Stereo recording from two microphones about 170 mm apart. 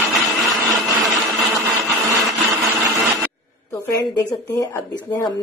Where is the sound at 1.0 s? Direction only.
Centre (ahead or behind).